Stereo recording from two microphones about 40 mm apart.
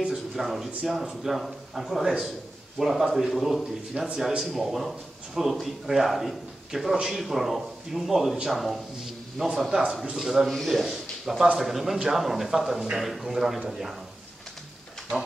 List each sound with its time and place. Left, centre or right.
0.1 s a man's voice: centre
3.9 s speech: right
4.4 s a man's voice: centre
10.5 s a man's voice: centre
10.9 s a sound: centre
11.5 s a man's voice: centre